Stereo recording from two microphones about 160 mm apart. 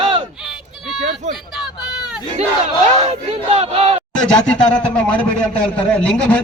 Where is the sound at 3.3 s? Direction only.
35° right (ahead or behind).